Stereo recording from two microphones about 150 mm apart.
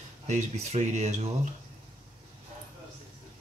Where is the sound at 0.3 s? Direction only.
50° right (ahead or behind).